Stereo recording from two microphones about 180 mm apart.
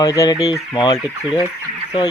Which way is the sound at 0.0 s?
20° left (ahead or behind).